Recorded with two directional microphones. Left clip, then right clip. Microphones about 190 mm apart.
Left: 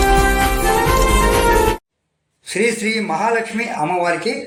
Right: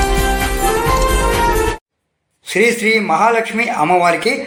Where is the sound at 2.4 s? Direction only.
10° right (ahead or behind).